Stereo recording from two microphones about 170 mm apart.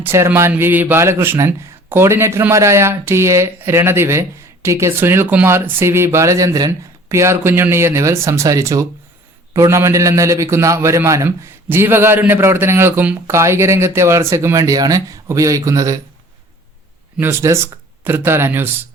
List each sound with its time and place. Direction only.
0.0 s speech: 15° right (ahead or behind)
17.2 s speech: 15° right (ahead or behind)